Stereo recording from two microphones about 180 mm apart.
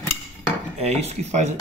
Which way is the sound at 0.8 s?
35° right (ahead or behind).